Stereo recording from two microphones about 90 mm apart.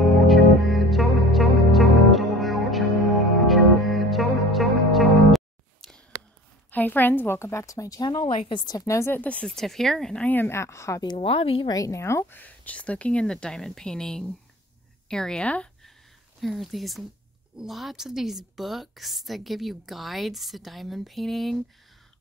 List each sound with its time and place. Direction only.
0.0 s music: centre (ahead or behind)
6.7 s a woman's voice: 20° left (ahead or behind); by 8.0 s 35° left (ahead or behind)
8.0 s speech: 55° left (ahead or behind)
8.7 s speech: 35° left (ahead or behind)
9.2 s speech: 15° left (ahead or behind)
9.6 s a woman's voice: 5° left (ahead or behind)
10.2 s a woman's voice: 20° left (ahead or behind)
11.1 s speech: 90° left
11.7 s speech: 40° left (ahead or behind); by 15.7 s 15° left (ahead or behind)
16.3 s a woman's voice: centre (ahead or behind)